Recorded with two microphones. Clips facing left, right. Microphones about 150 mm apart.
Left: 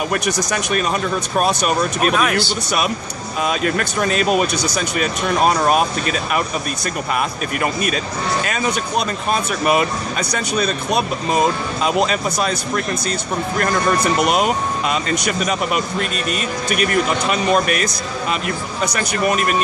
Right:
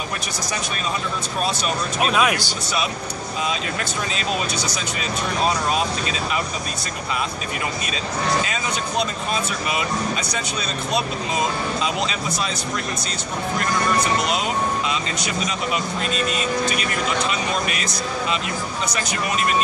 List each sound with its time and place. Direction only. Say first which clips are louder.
0.1 s speech: left 8 dB; 60° left (ahead or behind)
2.1 s speech: even; 15° right (ahead or behind)
3.4 s speech: left 8 dB; 55° left (ahead or behind)
14.2 s speech: left 5 dB; 55° left (ahead or behind)
18.9 s speech: left 7 dB; 55° left (ahead or behind)